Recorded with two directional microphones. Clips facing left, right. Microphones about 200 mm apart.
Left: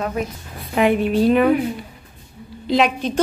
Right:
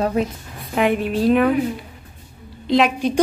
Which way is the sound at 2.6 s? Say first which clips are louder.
Right 1 dB; centre (ahead or behind).